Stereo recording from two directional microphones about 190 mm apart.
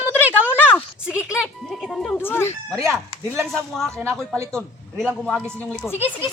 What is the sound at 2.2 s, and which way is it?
Speech, 10° left (ahead or behind).